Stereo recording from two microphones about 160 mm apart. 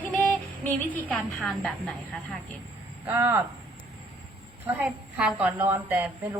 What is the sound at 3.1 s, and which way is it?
Speech, 15° right (ahead or behind).